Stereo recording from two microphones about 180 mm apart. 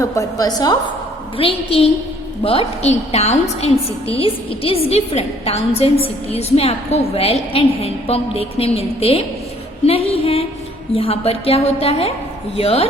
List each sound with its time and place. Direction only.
0.0 s a woman's voice: 20° left (ahead or behind)
1.4 s a woman's voice: 30° left (ahead or behind)